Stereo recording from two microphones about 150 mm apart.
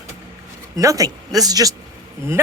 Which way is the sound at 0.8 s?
20° right (ahead or behind).